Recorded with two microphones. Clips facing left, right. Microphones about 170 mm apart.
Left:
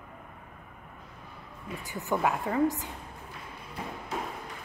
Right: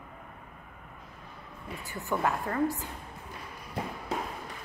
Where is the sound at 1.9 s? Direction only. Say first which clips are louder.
Left 2 dB; 15° left (ahead or behind).